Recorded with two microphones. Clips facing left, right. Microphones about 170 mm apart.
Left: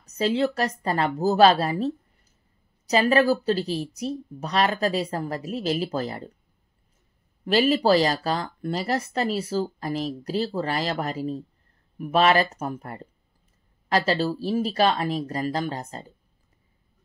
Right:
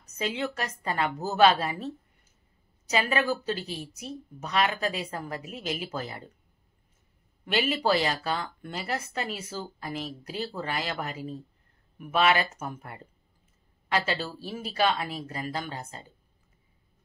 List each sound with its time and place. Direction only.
0.1 s speech: 35° left (ahead or behind)
2.9 s speech: 35° left (ahead or behind)
7.4 s speech: 35° left (ahead or behind)